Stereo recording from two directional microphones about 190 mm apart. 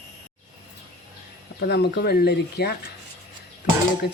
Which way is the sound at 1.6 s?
60° left (ahead or behind).